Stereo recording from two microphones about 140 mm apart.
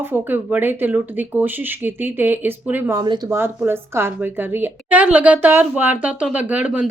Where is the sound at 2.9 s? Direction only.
30° right (ahead or behind).